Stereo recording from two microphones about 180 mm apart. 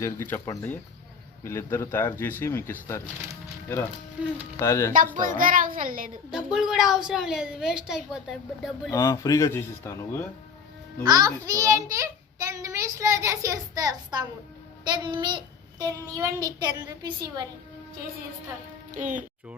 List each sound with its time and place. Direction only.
0.0 s speech: 10° left (ahead or behind)
4.2 s speech: 5° right (ahead or behind)
4.6 s speech: 15° left (ahead or behind)
5.4 s a child's voice: 50° right (ahead or behind)
6.3 s a woman's voice: centre (ahead or behind)
8.9 s speech: 15° left (ahead or behind)
11.0 s a child's voice: 20° right (ahead or behind)
18.9 s a child's voice: 45° right (ahead or behind)